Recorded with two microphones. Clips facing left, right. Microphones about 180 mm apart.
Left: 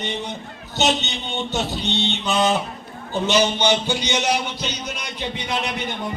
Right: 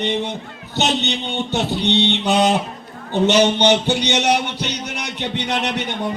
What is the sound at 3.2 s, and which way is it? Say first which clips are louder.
A man's voice: right 5 dB; 70° right (ahead or behind).